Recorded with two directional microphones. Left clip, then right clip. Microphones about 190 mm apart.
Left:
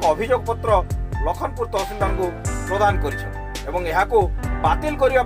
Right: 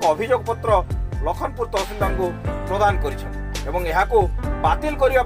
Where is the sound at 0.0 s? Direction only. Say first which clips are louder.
Even; centre (ahead or behind).